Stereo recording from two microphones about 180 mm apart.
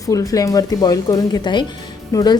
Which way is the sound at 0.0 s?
20° left (ahead or behind).